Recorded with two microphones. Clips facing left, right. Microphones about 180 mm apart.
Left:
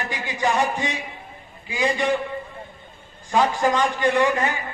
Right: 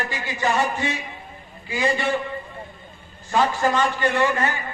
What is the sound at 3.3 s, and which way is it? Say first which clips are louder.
A man's voice: left 1 dB; 10° left (ahead or behind).